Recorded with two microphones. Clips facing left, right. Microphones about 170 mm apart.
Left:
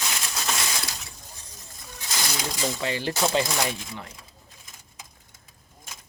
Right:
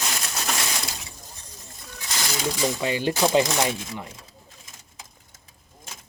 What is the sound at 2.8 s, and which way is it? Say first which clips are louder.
Speech: right 3 dB; 15° right (ahead or behind).